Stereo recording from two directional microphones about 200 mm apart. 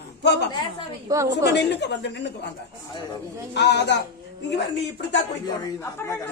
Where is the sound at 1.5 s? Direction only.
60° left (ahead or behind).